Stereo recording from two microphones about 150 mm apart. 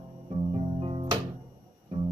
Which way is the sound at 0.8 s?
35° right (ahead or behind).